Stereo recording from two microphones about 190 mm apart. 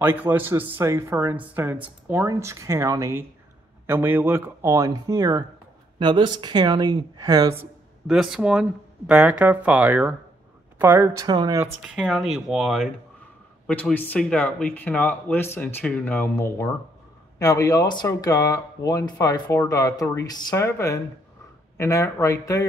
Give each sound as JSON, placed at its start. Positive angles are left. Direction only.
{"t": 0.0, "sound": "speech", "side_deg": -10}
{"t": 8.1, "sound": "speech", "side_deg": -5}
{"t": 11.6, "sound": "speech", "side_deg": -5}